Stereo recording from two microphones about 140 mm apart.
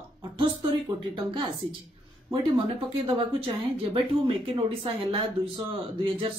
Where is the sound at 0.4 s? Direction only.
35° right (ahead or behind).